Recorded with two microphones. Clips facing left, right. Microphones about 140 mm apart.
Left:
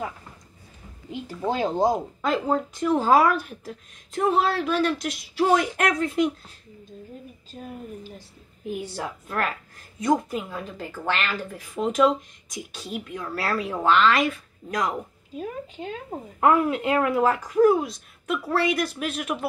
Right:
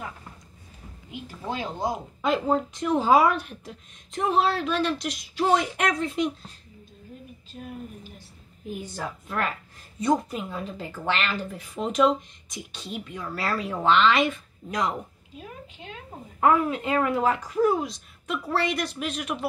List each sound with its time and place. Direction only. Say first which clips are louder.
1.2 s speech: left 7 dB; 45° left (ahead or behind)
2.2 s a woman's voice: right 1 dB; centre (ahead or behind)
9.3 s a woman's voice: left 1 dB; centre (ahead or behind)
15.3 s speech: left 9 dB; 40° left (ahead or behind)
16.3 s a woman's voice: left 1 dB; 10° left (ahead or behind)